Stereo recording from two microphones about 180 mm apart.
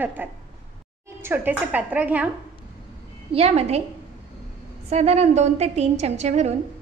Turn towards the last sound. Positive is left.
turn(degrees=-40)  # may be behind; listen again after turning